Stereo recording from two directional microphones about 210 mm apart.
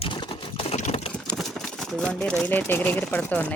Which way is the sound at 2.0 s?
5° left (ahead or behind).